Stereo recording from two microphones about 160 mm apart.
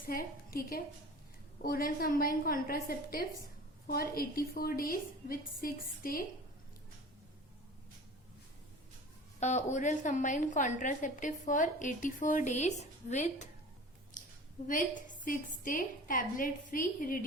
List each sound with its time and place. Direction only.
0.1 s a woman's voice: 65° left (ahead or behind)
9.4 s a woman's voice: 45° left (ahead or behind)
14.7 s a woman's voice: 55° left (ahead or behind)